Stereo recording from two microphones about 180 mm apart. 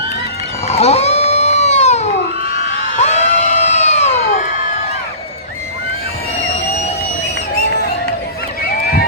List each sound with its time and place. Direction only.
0.7 s goat: 35° left (ahead or behind)
3.0 s crowd: 40° left (ahead or behind)
8.6 s honk: 55° left (ahead or behind)